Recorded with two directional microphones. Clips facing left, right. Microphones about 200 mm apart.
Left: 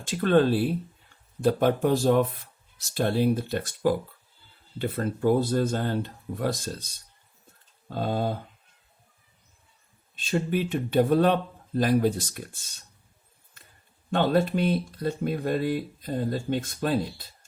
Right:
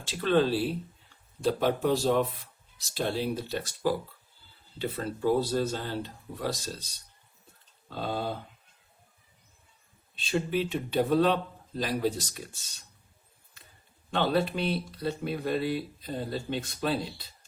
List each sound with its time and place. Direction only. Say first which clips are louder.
0.0 s speech: left 4 dB; 50° left (ahead or behind)
10.2 s speech: left 2 dB; 45° left (ahead or behind)
14.1 s speech: left 4 dB; 45° left (ahead or behind)